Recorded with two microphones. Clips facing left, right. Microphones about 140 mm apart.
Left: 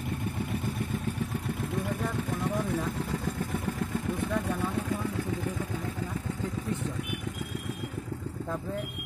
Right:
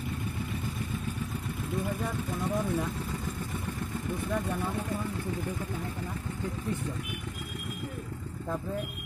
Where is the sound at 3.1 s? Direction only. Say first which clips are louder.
Left 4 dB; 65° left (ahead or behind).